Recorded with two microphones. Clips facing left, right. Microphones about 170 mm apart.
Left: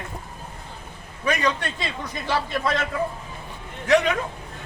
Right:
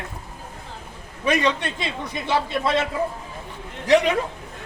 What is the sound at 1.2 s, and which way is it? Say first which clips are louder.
A man's voice: right 3 dB; 25° right (ahead or behind).